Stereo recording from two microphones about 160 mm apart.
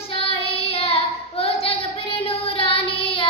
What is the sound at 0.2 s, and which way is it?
Child singing, 40° left (ahead or behind).